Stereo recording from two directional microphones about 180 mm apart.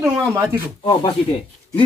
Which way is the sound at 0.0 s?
15° right (ahead or behind).